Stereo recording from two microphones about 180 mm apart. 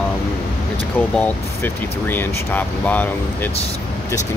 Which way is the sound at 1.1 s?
10° left (ahead or behind).